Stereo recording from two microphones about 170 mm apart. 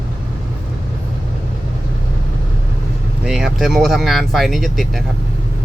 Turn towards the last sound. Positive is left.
turn(degrees=0)  # may be behind; listen again after turning